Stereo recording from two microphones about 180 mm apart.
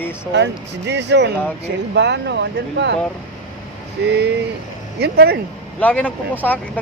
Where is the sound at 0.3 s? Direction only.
75° right (ahead or behind).